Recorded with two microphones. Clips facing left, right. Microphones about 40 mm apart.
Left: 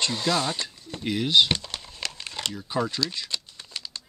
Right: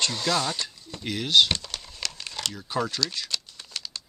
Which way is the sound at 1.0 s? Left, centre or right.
Centre.